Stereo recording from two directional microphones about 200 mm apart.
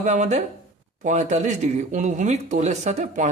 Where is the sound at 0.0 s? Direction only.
35° right (ahead or behind).